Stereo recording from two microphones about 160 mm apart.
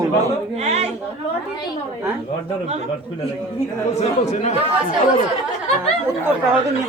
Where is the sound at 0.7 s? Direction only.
40° right (ahead or behind).